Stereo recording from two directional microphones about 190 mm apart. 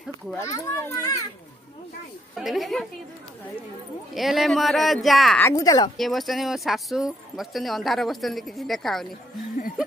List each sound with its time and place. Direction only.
0.3 s a child's voice: 15° left (ahead or behind)
2.3 s speech: centre (ahead or behind)
4.1 s speech: centre (ahead or behind)
5.4 s speech: 20° left (ahead or behind)
5.9 s speech: centre (ahead or behind)